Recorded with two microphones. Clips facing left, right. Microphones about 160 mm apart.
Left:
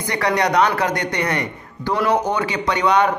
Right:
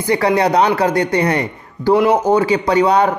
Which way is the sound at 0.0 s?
30° right (ahead or behind).